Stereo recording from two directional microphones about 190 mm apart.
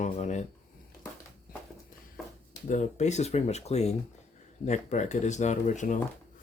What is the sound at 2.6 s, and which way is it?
Speech, 40° left (ahead or behind).